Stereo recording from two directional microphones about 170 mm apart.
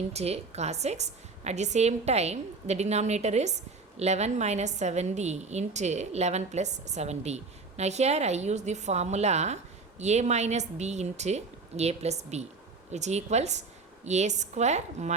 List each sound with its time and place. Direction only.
0.1 s a woman's voice: 40° right (ahead or behind)